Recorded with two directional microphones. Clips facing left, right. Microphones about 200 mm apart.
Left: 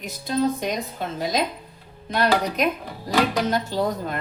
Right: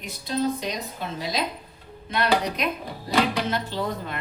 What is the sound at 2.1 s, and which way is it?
A woman's voice, 45° left (ahead or behind).